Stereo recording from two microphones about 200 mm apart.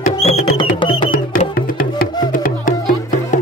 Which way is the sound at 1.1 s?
45° left (ahead or behind).